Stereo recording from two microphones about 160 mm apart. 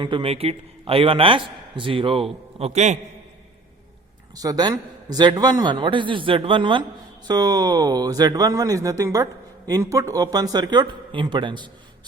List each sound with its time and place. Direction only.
0.0 s a man's voice: 35° right (ahead or behind)
4.4 s speech: 25° right (ahead or behind)